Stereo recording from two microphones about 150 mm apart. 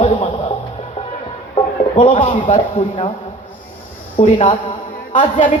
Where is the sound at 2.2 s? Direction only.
55° left (ahead or behind).